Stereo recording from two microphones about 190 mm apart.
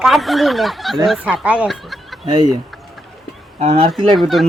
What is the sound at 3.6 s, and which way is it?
Speech, 30° right (ahead or behind).